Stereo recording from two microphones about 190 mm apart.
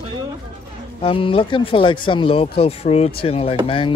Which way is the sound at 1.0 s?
30° left (ahead or behind).